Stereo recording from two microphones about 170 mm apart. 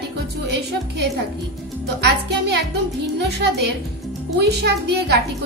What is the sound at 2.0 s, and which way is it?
A woman's voice, 75° right (ahead or behind).